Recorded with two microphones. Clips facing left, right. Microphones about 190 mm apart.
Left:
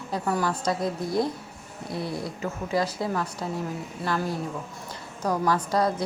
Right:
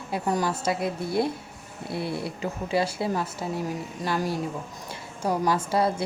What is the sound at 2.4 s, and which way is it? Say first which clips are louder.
Speech: right 1 dB; 25° right (ahead or behind).